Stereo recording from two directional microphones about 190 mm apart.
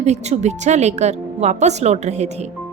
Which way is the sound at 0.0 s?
35° right (ahead or behind).